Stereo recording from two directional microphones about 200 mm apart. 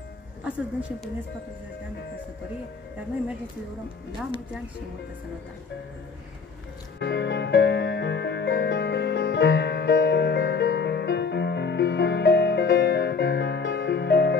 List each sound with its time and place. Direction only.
0.4 s speech: 5° right (ahead or behind)
7.0 s music: 60° left (ahead or behind)